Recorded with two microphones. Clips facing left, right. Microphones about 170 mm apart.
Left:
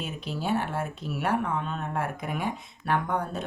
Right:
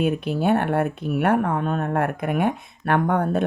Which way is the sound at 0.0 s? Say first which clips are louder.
Right 11 dB; 60° right (ahead or behind).